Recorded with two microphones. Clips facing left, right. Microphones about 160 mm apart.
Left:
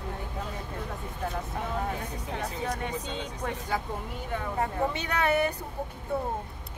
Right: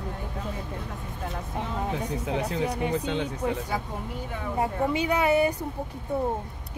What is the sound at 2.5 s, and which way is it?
Speech, 70° right (ahead or behind).